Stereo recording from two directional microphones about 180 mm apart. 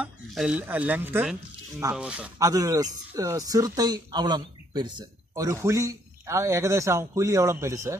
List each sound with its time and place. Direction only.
0.0 s speech: 5° right (ahead or behind)
2.3 s speech: 20° right (ahead or behind)